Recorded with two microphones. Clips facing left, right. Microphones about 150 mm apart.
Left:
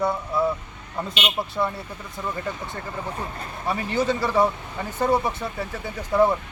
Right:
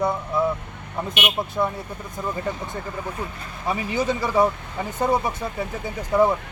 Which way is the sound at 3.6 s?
15° right (ahead or behind).